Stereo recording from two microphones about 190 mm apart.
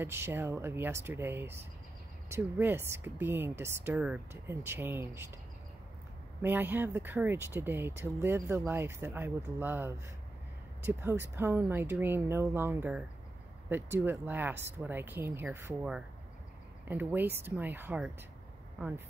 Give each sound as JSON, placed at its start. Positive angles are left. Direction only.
{"t": 0.0, "sound": "speech", "side_deg": -10}
{"t": 6.4, "sound": "speech", "side_deg": -10}